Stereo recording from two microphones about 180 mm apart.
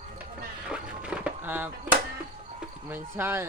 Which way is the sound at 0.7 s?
5° right (ahead or behind).